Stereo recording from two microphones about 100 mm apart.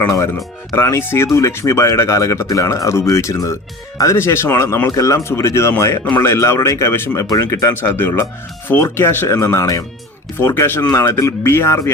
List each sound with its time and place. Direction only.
0.8 s speech: 25° left (ahead or behind)
7.3 s speech: 35° left (ahead or behind)
7.8 s speech: 20° left (ahead or behind)